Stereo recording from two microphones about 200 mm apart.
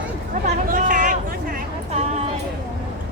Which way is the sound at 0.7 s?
40° right (ahead or behind).